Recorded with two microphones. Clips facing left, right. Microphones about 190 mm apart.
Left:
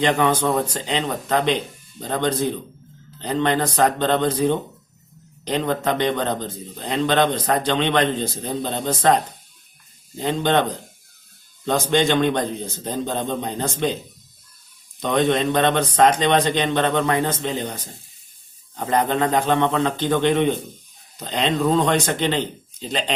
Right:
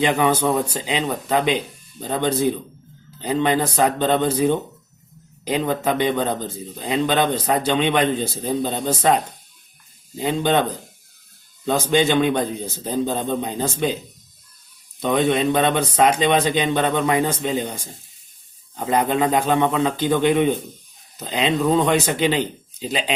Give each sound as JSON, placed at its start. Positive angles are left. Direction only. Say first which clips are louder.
{"t": 0.0, "sound": "a man's voice", "louder": "right 1 dB", "side_deg": -10}
{"t": 15.0, "sound": "a man's voice", "louder": "right 1 dB", "side_deg": -5}
{"t": 18.9, "sound": "a man's voice", "louder": "right 1 dB", "side_deg": -10}